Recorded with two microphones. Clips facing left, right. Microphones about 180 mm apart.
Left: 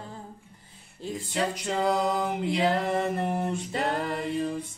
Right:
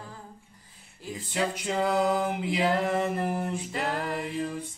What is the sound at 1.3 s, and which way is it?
Mantra, centre (ahead or behind).